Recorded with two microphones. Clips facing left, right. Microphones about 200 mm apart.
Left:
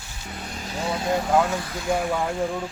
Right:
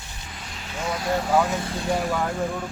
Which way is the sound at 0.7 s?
30° left (ahead or behind).